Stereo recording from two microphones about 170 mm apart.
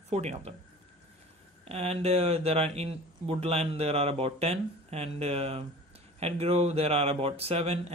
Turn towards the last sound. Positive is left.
turn(degrees=-35)  # may be behind; listen again after turning